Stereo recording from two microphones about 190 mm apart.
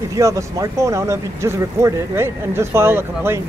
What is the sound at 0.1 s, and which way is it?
Speech, 15° right (ahead or behind).